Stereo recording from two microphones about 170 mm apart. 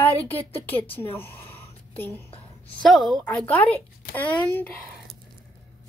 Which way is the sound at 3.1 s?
5° left (ahead or behind).